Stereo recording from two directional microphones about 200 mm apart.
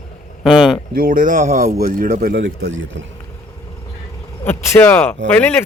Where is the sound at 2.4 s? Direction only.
70° right (ahead or behind).